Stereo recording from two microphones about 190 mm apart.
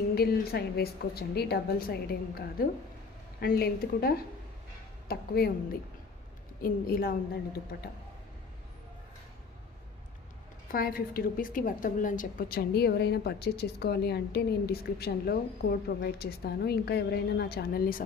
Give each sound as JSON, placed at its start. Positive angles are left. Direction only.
{"t": 0.1, "sound": "a woman's voice", "side_deg": 55}
{"t": 10.7, "sound": "a woman's voice", "side_deg": 50}